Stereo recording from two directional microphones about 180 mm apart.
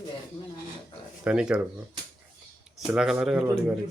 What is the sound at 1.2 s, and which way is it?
Speech, 5° right (ahead or behind).